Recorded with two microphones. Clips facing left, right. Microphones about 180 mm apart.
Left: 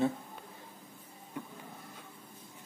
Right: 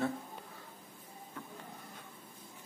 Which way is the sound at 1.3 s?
15° left (ahead or behind).